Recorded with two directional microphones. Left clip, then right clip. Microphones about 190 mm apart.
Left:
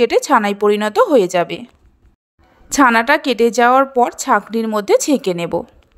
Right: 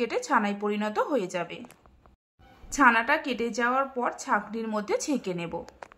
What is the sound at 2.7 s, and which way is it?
Speech, 45° left (ahead or behind).